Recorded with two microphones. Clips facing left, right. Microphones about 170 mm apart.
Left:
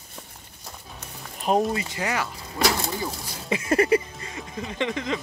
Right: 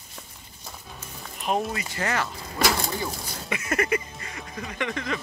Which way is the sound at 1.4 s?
40° left (ahead or behind).